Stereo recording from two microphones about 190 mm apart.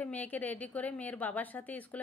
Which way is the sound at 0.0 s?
10° left (ahead or behind).